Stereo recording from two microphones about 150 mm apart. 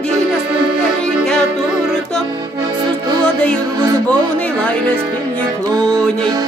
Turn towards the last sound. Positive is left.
turn(degrees=10)  # may be behind; listen again after turning